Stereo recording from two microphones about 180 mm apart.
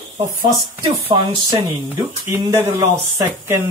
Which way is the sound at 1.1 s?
20° right (ahead or behind).